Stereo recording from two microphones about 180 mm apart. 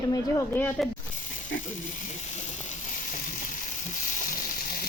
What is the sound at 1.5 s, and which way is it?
Ratchet, 90° left.